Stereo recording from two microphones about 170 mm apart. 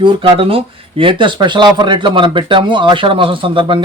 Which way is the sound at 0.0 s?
30° right (ahead or behind).